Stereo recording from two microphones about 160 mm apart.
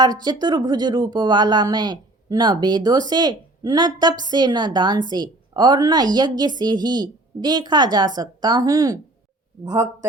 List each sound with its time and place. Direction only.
0.0 s a woman's voice: 25° right (ahead or behind)